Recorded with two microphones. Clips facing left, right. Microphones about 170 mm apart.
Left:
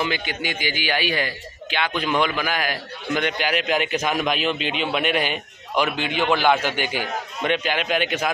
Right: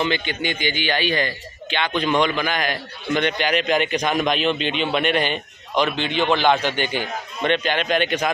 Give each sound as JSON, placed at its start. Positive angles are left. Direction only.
{"t": 0.0, "sound": "a man's voice", "side_deg": 5}